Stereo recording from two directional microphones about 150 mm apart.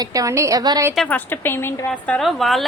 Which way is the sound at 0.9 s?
10° left (ahead or behind).